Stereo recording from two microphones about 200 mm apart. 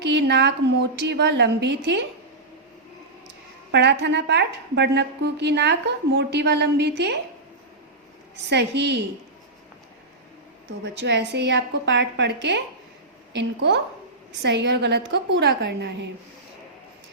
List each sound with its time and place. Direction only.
0.0 s a woman's voice: 60° right (ahead or behind)
3.7 s a woman's voice: 60° right (ahead or behind)
8.4 s a woman's voice: 60° right (ahead or behind)
10.8 s a woman's voice: 60° right (ahead or behind)